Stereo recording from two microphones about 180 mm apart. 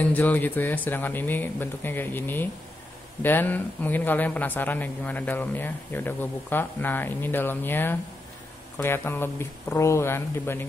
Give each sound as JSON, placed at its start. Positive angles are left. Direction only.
{"t": 0.0, "sound": "speech", "side_deg": 10}